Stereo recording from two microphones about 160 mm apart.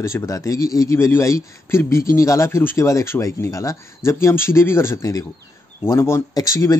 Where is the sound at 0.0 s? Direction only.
20° left (ahead or behind).